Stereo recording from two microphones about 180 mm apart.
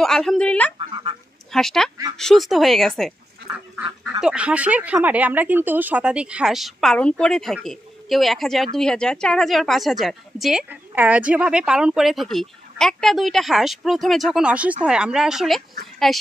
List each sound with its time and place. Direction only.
0.0 s a woman's voice: centre (ahead or behind)
0.7 s speech: 30° right (ahead or behind)
1.5 s a woman's voice: centre (ahead or behind)
3.5 s a woman's voice: 10° right (ahead or behind)